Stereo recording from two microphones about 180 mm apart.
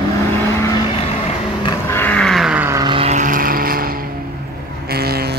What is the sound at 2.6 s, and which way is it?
Vehicle, 20° right (ahead or behind).